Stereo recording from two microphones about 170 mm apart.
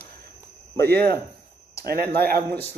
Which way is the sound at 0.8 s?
65° right (ahead or behind).